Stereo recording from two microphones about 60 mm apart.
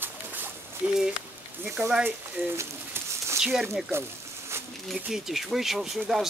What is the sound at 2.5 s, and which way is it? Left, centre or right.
Bird, right.